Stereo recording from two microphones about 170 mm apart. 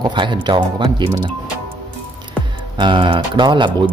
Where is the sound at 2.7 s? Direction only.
30° right (ahead or behind).